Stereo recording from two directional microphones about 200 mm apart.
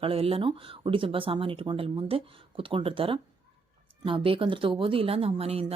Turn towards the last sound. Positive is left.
turn(degrees=-30)  # may be behind; listen again after turning